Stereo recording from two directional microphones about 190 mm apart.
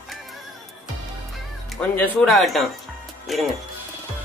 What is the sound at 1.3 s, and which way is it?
Speech, centre (ahead or behind).